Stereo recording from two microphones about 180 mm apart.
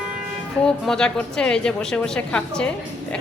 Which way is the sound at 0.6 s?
5° left (ahead or behind).